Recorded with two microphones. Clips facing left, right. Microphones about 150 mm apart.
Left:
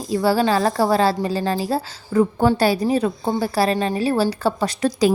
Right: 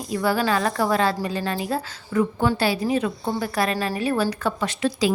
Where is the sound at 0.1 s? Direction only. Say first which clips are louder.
Left 4 dB; 30° left (ahead or behind).